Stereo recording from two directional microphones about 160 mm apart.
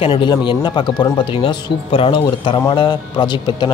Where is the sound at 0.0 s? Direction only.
35° left (ahead or behind).